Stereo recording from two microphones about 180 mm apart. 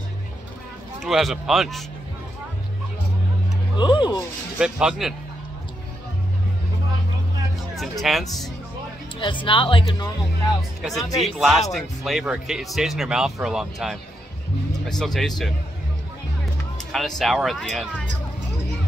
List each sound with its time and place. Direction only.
1.0 s speech: centre (ahead or behind)
3.7 s speech: 25° left (ahead or behind)
4.6 s speech: 5° right (ahead or behind)
8.0 s speech: centre (ahead or behind)
9.2 s speech: 25° left (ahead or behind)
10.8 s speech: centre (ahead or behind)
17.2 s speech: centre (ahead or behind)